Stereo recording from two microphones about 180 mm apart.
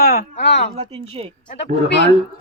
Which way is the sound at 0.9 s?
30° right (ahead or behind).